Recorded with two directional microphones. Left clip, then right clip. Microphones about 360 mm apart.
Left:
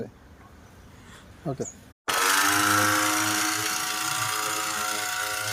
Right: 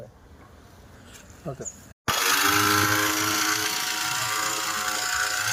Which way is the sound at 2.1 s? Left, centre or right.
Centre.